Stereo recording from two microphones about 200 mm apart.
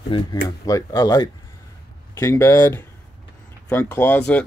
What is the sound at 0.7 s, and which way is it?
Speech, 20° left (ahead or behind).